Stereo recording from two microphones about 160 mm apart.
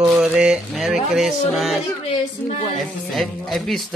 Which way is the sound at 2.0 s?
35° left (ahead or behind).